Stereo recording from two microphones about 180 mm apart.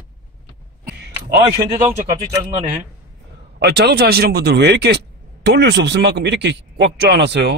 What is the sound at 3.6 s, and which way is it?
A man's voice, 65° right (ahead or behind).